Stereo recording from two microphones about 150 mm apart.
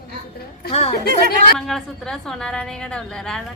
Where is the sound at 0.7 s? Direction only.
45° left (ahead or behind).